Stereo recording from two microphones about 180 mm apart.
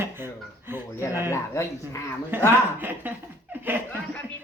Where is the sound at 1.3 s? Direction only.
15° left (ahead or behind).